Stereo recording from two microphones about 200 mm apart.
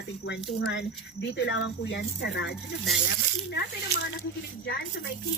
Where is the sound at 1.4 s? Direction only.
80° left; by 2.5 s 60° left (ahead or behind).